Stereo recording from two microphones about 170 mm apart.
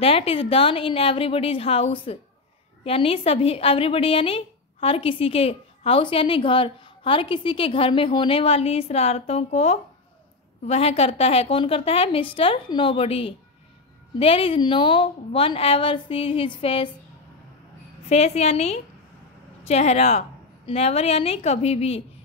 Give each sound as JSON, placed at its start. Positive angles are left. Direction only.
{"t": 0.0, "sound": "a woman's voice", "side_deg": 35}
{"t": 18.0, "sound": "a woman's voice", "side_deg": 40}